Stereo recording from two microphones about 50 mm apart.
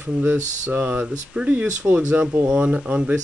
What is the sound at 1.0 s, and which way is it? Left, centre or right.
Speech, right.